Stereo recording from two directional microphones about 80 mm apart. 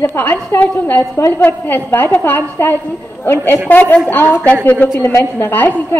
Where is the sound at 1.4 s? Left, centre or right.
Left.